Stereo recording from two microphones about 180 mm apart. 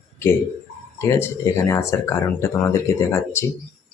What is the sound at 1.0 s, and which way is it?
Speech, 15° left (ahead or behind).